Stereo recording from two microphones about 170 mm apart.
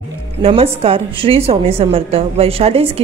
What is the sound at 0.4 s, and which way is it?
A woman's voice, 35° right (ahead or behind).